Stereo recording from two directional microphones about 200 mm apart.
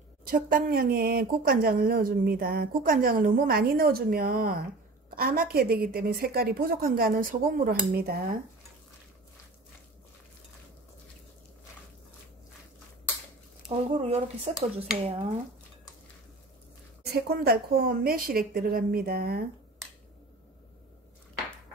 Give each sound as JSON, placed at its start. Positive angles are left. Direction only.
{"t": 0.2, "sound": "speech", "side_deg": -45}
{"t": 13.7, "sound": "speech", "side_deg": -30}
{"t": 17.0, "sound": "speech", "side_deg": -50}